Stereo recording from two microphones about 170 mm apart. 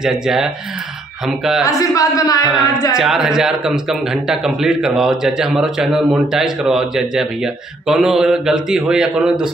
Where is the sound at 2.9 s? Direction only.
5° right (ahead or behind).